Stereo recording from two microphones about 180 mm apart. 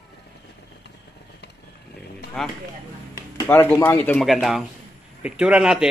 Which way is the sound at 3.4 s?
10° left (ahead or behind).